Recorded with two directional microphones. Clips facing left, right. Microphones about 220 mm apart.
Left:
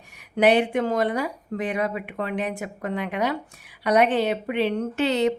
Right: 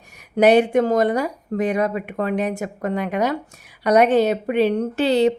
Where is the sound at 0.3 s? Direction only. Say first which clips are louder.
Right 5 dB; 40° right (ahead or behind).